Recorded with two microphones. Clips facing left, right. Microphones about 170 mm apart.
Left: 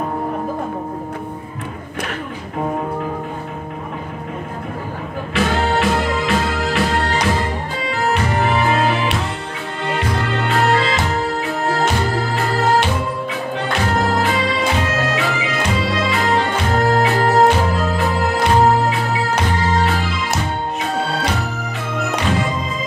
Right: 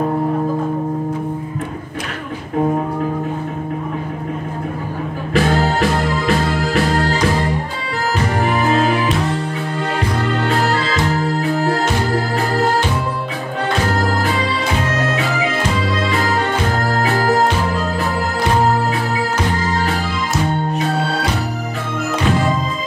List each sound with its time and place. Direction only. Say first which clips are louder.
5.3 s music: right 2 dB; 45° right (ahead or behind)